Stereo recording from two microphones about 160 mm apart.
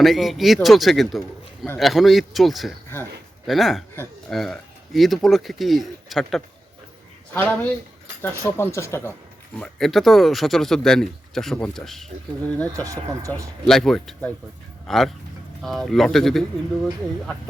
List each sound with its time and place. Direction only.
0.0 s speech: centre (ahead or behind)
8.2 s speech: 15° left (ahead or behind)
9.6 s speech: centre (ahead or behind)
12.8 s speech: 20° right (ahead or behind)
13.7 s speech: 5° left (ahead or behind)